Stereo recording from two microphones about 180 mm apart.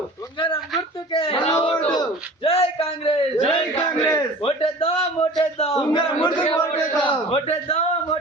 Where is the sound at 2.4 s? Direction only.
30° left (ahead or behind).